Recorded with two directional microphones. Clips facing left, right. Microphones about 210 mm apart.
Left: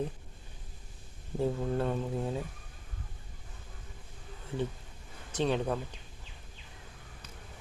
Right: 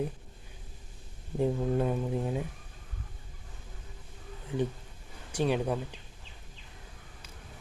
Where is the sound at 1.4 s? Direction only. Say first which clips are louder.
Right 3 dB; 15° right (ahead or behind).